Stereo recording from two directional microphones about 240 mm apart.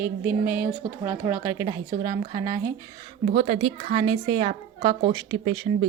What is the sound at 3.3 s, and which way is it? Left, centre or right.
A woman's voice, right.